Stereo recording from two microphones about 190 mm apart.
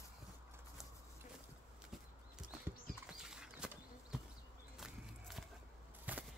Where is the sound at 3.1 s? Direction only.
5° right (ahead or behind).